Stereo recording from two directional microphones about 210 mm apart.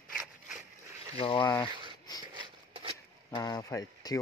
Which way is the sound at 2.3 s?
25° right (ahead or behind).